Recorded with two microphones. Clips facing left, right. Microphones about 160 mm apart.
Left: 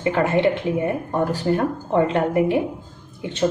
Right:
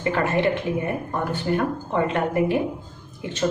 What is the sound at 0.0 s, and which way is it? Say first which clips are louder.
Speech: left 3 dB; 25° left (ahead or behind).